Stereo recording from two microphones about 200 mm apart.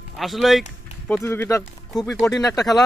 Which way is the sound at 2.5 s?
Centre (ahead or behind).